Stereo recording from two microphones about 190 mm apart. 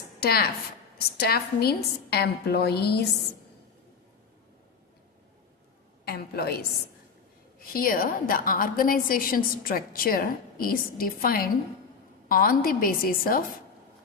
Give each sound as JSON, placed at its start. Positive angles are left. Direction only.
{"t": 0.2, "sound": "a woman's voice", "side_deg": 55}
{"t": 6.1, "sound": "a woman's voice", "side_deg": 55}
{"t": 7.7, "sound": "a woman's voice", "side_deg": 50}